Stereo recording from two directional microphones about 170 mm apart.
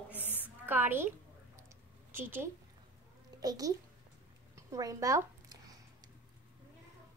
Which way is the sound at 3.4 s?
25° right (ahead or behind).